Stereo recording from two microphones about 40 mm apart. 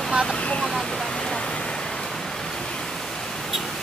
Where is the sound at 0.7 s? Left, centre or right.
Centre.